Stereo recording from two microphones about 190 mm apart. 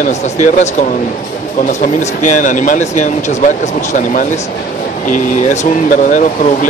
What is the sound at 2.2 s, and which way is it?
Speech, 40° left (ahead or behind).